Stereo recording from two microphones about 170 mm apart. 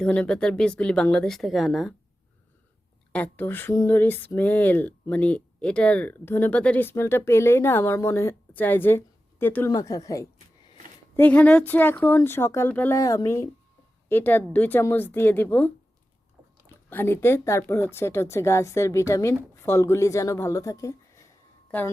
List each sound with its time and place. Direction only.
0.0 s speech: 5° left (ahead or behind)
3.1 s speech: 10° left (ahead or behind)
11.2 s speech: 10° left (ahead or behind)
16.9 s speech: 10° left (ahead or behind)